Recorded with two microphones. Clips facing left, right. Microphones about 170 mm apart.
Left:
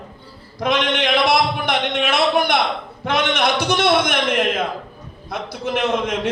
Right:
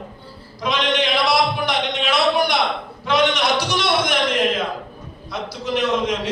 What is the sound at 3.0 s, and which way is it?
A man's voice, 55° left (ahead or behind).